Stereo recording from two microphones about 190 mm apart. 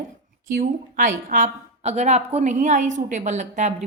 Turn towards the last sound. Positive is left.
turn(degrees=-40)  # may be behind; listen again after turning